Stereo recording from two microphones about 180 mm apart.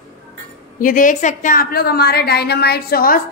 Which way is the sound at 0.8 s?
50° left (ahead or behind).